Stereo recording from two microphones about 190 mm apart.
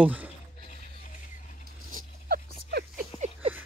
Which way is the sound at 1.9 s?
50° right (ahead or behind).